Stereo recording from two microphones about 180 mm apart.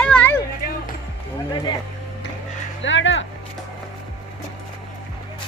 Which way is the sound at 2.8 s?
90° left.